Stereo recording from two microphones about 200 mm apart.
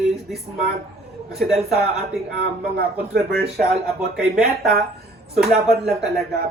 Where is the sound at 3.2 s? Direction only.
50° right (ahead or behind).